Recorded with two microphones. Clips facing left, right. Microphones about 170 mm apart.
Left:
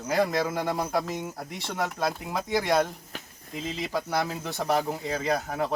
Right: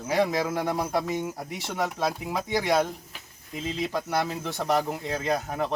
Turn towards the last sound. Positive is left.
turn(degrees=0)  # may be behind; listen again after turning